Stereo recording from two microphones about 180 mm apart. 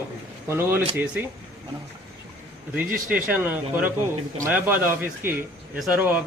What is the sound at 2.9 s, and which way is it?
Speech, 55° right (ahead or behind).